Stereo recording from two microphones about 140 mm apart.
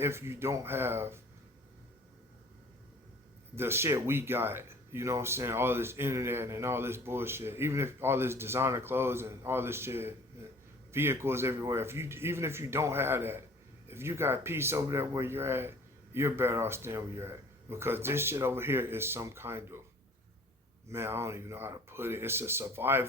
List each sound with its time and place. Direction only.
0.0 s speech: 20° right (ahead or behind)
3.5 s speech: 15° right (ahead or behind)
20.9 s speech: 15° right (ahead or behind)